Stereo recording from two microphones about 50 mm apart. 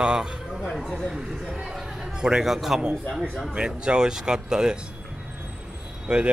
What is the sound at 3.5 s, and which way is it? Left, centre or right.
Speech, centre.